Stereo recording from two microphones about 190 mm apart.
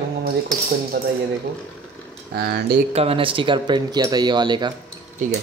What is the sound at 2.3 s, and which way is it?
Speech, 55° right (ahead or behind).